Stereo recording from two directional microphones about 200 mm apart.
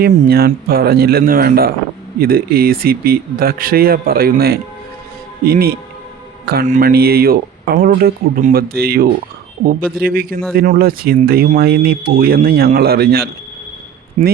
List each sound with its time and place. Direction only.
0.0 s speech: 50° right (ahead or behind)
14.2 s a man's voice: 40° right (ahead or behind)